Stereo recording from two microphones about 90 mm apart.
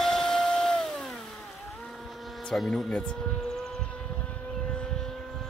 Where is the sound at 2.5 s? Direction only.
5° left (ahead or behind).